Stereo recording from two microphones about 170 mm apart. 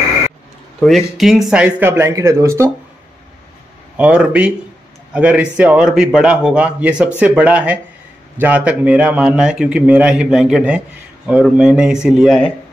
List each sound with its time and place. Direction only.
0.7 s a man's voice: centre (ahead or behind); by 2.7 s 15° right (ahead or behind)
3.9 s a man's voice: 10° right (ahead or behind)